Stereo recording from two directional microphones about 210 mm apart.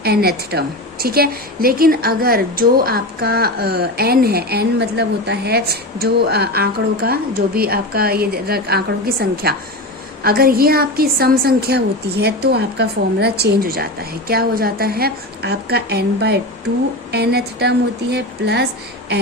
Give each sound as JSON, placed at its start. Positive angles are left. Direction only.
{"t": 0.0, "sound": "a woman's voice", "side_deg": -50}